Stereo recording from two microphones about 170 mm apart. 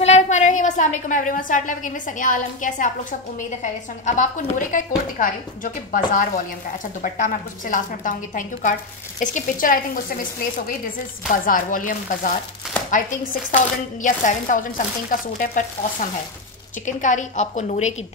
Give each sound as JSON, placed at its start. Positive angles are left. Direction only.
{"t": 0.0, "sound": "a woman's voice", "side_deg": 40}
{"t": 11.2, "sound": "a woman's voice", "side_deg": 55}